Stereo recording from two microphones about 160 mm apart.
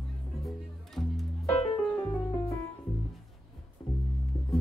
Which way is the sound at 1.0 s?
5° left (ahead or behind).